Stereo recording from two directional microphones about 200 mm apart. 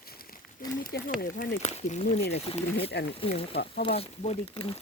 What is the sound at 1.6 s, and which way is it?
Speech, 35° left (ahead or behind).